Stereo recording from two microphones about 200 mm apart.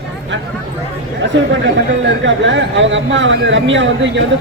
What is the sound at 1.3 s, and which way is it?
Speech, 65° right (ahead or behind).